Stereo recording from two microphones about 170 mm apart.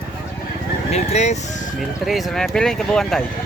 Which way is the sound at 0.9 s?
40° left (ahead or behind).